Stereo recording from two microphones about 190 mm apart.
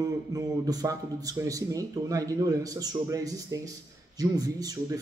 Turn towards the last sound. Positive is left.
turn(degrees=-20)  # may be behind; listen again after turning